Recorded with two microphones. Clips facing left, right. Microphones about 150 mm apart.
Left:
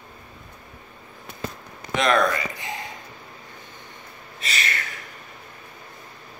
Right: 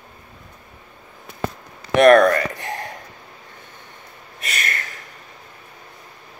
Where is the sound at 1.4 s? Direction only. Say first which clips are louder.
Right 6 dB; 65° right (ahead or behind).